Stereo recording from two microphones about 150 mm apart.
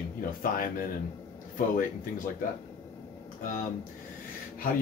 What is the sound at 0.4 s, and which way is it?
Speech, 70° left (ahead or behind).